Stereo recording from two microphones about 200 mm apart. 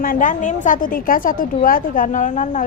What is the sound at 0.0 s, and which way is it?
A woman's voice, 45° left (ahead or behind).